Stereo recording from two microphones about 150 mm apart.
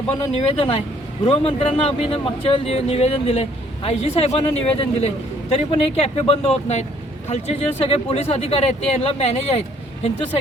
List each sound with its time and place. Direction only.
0.3 s a man's voice: 40° left (ahead or behind)